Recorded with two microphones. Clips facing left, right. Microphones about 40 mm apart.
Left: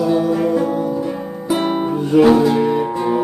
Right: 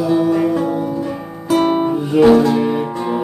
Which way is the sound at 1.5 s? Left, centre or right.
Centre.